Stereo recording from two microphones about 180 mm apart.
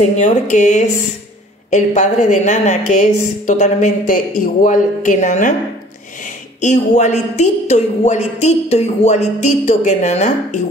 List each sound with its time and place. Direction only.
0.1 s a woman's voice: 40° left (ahead or behind)
6.6 s a man's voice: 40° left (ahead or behind)